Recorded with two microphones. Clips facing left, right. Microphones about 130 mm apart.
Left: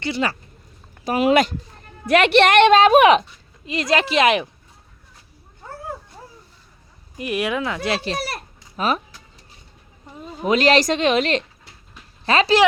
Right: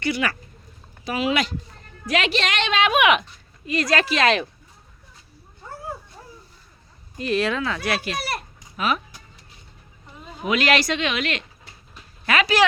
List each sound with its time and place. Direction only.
0.0 s speech: 30° left (ahead or behind)
1.0 s a woman's voice: 50° left (ahead or behind)
2.8 s a woman's voice: 35° left (ahead or behind)
3.7 s speech: 20° left (ahead or behind)
7.2 s speech: 15° left (ahead or behind); by 9.0 s 35° left (ahead or behind)
10.4 s a woman's voice: 35° left (ahead or behind)